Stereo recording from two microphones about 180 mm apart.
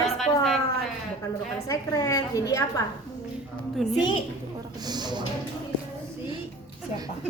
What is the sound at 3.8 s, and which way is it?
Speech, centre (ahead or behind).